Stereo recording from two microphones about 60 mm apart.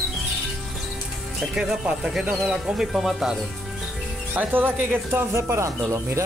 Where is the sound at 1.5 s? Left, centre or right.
Centre.